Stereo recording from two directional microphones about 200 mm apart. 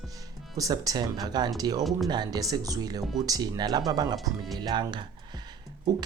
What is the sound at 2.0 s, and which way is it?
Speech, 20° right (ahead or behind).